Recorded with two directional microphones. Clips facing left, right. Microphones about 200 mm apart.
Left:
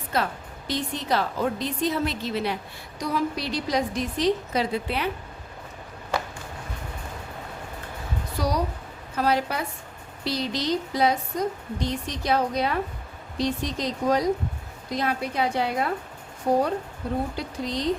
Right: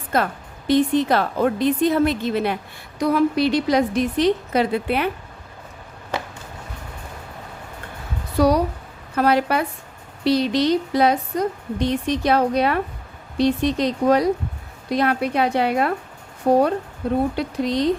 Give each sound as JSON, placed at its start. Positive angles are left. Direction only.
{"t": 0.1, "sound": "a woman's voice", "side_deg": -50}
{"t": 8.4, "sound": "a woman's voice", "side_deg": -60}